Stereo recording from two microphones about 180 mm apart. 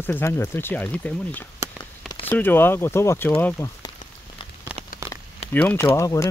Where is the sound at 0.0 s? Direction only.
10° left (ahead or behind).